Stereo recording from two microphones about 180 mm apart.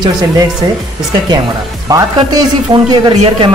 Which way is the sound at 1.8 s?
20° right (ahead or behind).